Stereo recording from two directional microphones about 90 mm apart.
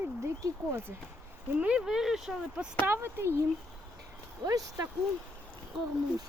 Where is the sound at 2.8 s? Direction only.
25° right (ahead or behind).